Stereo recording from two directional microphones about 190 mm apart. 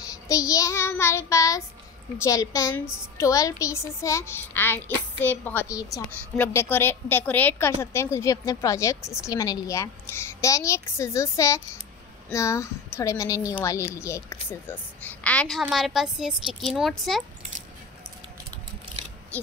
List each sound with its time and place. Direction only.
0.3 s speech: 15° left (ahead or behind); by 16.9 s centre (ahead or behind)